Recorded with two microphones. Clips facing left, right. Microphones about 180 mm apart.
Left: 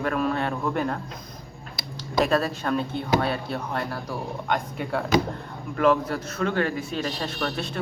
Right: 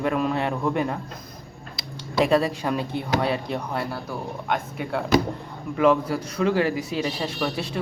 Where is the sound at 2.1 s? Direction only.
10° right (ahead or behind).